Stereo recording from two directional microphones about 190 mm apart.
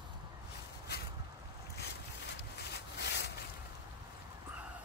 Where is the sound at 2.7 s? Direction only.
65° left (ahead or behind).